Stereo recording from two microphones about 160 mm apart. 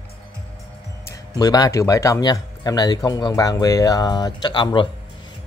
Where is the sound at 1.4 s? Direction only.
25° left (ahead or behind).